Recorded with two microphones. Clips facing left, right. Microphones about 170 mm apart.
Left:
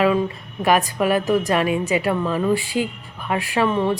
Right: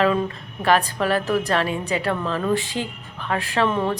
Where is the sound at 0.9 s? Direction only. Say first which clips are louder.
Left 3 dB; 15° left (ahead or behind).